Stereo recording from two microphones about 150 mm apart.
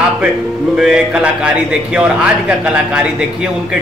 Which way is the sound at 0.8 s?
5° right (ahead or behind).